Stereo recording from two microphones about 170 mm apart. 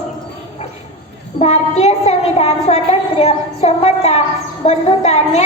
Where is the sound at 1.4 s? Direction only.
40° left (ahead or behind).